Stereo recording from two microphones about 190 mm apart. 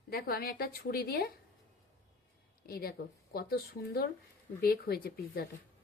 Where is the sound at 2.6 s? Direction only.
50° left (ahead or behind).